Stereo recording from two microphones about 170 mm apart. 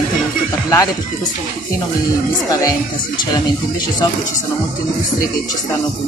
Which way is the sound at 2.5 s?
20° left (ahead or behind).